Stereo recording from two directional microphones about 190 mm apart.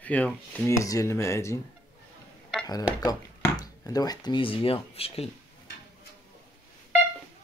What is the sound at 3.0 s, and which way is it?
Speech, 20° left (ahead or behind).